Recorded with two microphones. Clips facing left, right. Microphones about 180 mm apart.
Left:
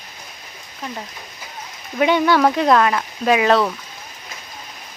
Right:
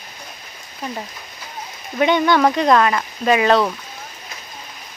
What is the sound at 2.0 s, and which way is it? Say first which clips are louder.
Speech: even; 5° left (ahead or behind).